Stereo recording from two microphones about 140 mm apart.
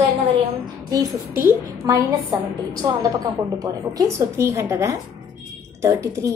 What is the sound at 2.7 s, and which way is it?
A woman's voice, 30° right (ahead or behind).